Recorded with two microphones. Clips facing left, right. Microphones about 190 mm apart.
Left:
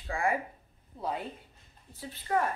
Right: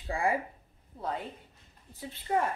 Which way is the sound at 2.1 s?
25° right (ahead or behind).